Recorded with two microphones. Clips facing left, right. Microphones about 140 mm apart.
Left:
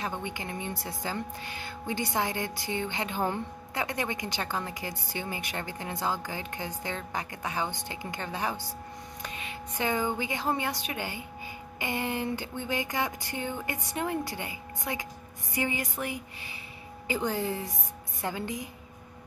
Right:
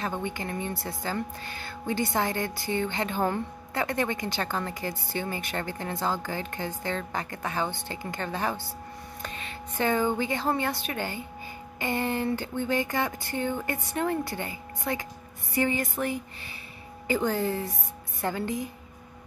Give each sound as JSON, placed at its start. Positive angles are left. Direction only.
{"t": 0.2, "sound": "speech", "side_deg": 15}